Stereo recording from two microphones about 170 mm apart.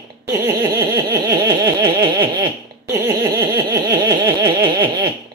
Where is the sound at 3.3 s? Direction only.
20° right (ahead or behind).